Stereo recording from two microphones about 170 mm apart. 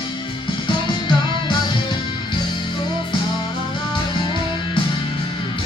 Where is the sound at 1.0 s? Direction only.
25° left (ahead or behind).